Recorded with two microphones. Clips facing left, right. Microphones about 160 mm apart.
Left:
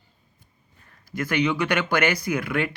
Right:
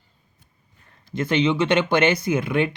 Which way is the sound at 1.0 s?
25° right (ahead or behind).